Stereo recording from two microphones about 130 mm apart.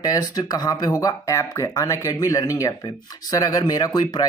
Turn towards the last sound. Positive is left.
turn(degrees=30)  # may be behind; listen again after turning